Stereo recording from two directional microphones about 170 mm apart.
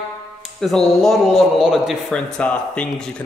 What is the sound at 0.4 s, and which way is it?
A man's voice, centre (ahead or behind).